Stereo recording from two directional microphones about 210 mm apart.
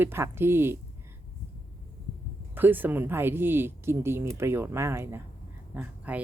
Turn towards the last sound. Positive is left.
turn(degrees=-5)  # may be behind; listen again after turning